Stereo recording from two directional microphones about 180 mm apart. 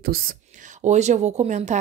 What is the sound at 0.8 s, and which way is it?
Speech, 40° right (ahead or behind).